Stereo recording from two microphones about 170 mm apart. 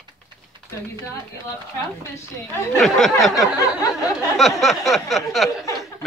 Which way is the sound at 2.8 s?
Centre (ahead or behind).